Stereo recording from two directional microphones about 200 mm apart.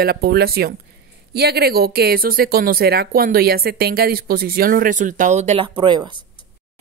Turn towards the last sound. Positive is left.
turn(degrees=-20)  # may be behind; listen again after turning